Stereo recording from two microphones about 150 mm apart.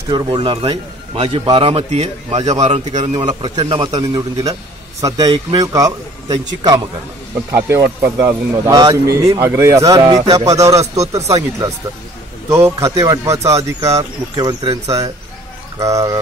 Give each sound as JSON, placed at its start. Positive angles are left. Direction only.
{"t": 0.1, "sound": "a man's voice", "side_deg": -30}
{"t": 7.5, "sound": "speech", "side_deg": -15}